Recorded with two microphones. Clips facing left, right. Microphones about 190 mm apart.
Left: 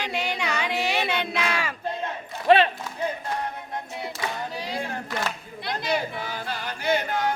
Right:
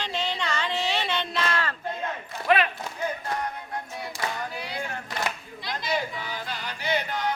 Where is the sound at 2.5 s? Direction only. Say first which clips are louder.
Left 5 dB; 30° left (ahead or behind).